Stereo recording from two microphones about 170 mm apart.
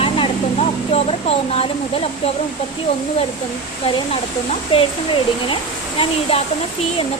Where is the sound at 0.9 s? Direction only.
35° left (ahead or behind).